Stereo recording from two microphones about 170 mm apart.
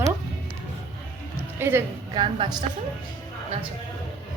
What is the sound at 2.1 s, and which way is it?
Speech, 25° right (ahead or behind).